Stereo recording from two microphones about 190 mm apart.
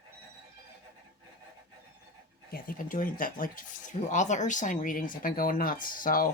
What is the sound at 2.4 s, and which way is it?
Speech, 50° left (ahead or behind).